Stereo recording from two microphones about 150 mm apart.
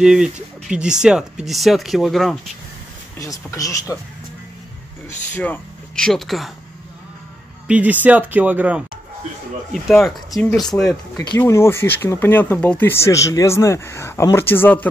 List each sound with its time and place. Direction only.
0.0 s speech: 5° right (ahead or behind)
3.2 s speech: 20° left (ahead or behind)
5.3 s speech: 10° left (ahead or behind)
7.6 s speech: 10° right (ahead or behind)
9.7 s speech: centre (ahead or behind)
10.9 s speech: 25° left (ahead or behind)